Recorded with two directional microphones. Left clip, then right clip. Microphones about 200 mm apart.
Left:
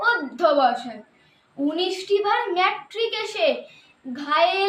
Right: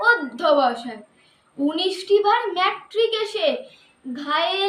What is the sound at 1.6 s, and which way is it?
A child's voice, centre (ahead or behind).